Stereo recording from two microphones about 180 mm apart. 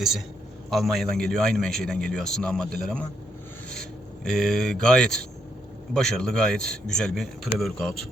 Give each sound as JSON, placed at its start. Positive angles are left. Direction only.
{"t": 0.7, "sound": "a man's voice", "side_deg": 0}
{"t": 4.2, "sound": "a man's voice", "side_deg": 5}